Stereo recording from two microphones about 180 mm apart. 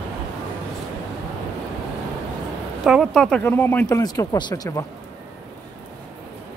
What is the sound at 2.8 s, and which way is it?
Speech, centre (ahead or behind).